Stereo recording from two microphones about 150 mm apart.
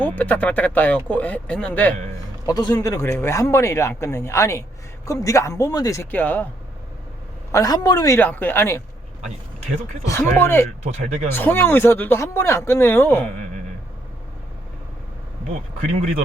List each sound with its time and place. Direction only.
0.0 s speech: 10° left (ahead or behind)
2.5 s speech: 25° left (ahead or behind)
7.5 s speech: 25° left (ahead or behind)
10.1 s speech: 15° left (ahead or behind)
10.8 s speech: 50° right (ahead or behind)
11.3 s speech: 15° left (ahead or behind)
15.8 s speech: 50° right (ahead or behind)